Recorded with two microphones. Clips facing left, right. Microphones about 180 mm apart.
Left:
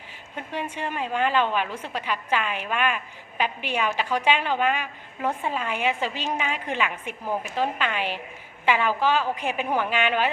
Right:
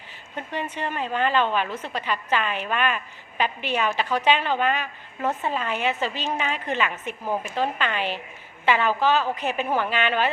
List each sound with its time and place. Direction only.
0.3 s a woman's voice: 10° left (ahead or behind)